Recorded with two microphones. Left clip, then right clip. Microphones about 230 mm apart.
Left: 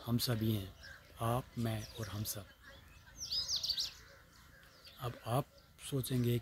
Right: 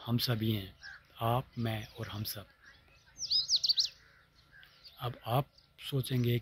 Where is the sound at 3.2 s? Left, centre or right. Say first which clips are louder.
Right 8 dB; left.